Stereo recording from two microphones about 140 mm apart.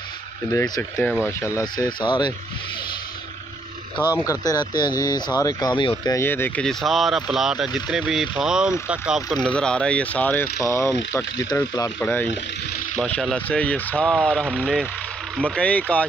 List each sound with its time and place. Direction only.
0.5 s speech: 20° left (ahead or behind)
4.0 s speech: 15° right (ahead or behind)
4.3 s speech: 30° left (ahead or behind)
6.1 s speech: 15° left (ahead or behind)
6.6 s speech: centre (ahead or behind)
9.4 s speech: 5° left (ahead or behind)
11.1 s speech: 20° left (ahead or behind)
13.0 s speech: 5° left (ahead or behind)